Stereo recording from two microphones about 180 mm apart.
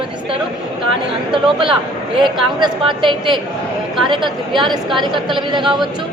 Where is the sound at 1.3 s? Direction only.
30° right (ahead or behind).